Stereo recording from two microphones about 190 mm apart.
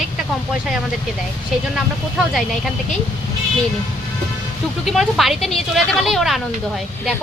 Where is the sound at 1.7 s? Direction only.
Centre (ahead or behind).